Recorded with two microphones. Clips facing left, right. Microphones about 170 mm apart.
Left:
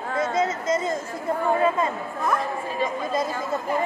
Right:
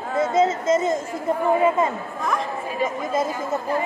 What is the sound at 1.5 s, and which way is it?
Speech, 20° right (ahead or behind).